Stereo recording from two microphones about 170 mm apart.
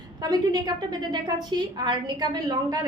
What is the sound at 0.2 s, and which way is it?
A woman's voice, 20° right (ahead or behind).